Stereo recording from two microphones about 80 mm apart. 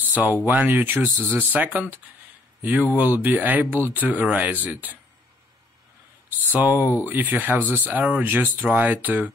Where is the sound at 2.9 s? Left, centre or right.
Right.